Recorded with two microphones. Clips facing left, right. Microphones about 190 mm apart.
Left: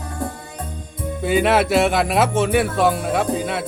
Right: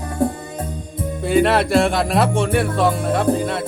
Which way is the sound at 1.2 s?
Centre (ahead or behind).